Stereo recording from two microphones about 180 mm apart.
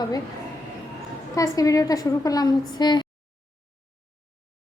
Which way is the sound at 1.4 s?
20° left (ahead or behind).